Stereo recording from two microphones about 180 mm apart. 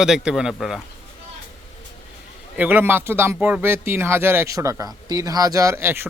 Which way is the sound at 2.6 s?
10° right (ahead or behind).